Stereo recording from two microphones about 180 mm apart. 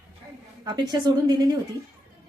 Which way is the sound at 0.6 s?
25° right (ahead or behind).